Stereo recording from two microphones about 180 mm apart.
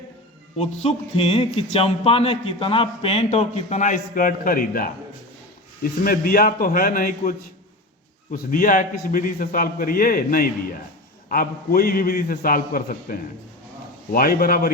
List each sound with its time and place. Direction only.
0.5 s a man's voice: 35° left (ahead or behind); by 14.7 s 55° left (ahead or behind)